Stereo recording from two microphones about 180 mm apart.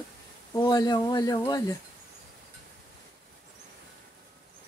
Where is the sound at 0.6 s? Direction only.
20° left (ahead or behind).